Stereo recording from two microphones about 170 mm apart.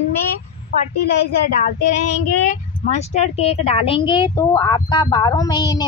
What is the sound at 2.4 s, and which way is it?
Speech, 45° left (ahead or behind).